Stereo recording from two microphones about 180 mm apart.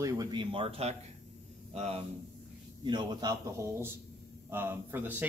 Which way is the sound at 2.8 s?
25° right (ahead or behind).